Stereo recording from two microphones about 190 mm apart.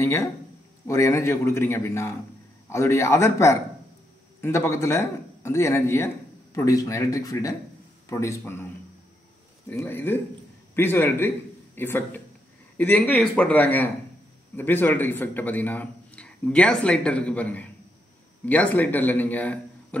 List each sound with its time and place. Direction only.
0.0 s speech: 15° left (ahead or behind)
9.7 s a man's voice: 10° left (ahead or behind)